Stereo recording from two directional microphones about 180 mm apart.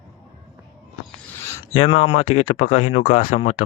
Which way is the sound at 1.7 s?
30° left (ahead or behind).